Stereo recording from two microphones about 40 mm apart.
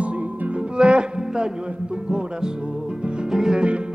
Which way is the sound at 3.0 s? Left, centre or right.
Right.